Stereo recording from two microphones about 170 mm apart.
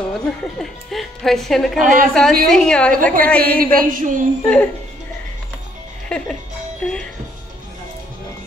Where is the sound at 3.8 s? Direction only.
50° right (ahead or behind).